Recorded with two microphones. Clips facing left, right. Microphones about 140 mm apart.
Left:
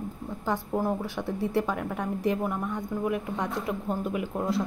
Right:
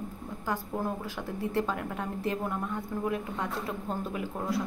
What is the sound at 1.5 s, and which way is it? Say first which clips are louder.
A woman's voice: left 1 dB; 10° left (ahead or behind).